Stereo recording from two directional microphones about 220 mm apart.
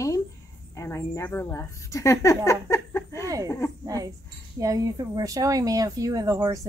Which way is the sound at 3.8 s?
15° right (ahead or behind).